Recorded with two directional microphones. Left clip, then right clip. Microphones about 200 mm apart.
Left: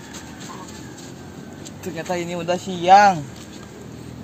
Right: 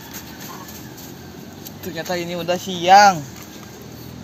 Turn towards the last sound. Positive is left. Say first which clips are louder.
# right 1 dB
turn(degrees=5)  # may be behind; listen again after turning